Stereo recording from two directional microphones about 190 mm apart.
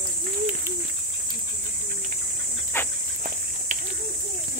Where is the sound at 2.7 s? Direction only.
10° left (ahead or behind).